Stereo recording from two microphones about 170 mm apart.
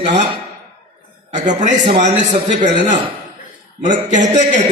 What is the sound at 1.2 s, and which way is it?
A man's voice, 45° right (ahead or behind).